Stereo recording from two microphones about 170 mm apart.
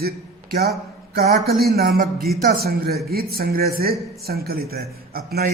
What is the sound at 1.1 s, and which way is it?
A man's voice, 60° right (ahead or behind).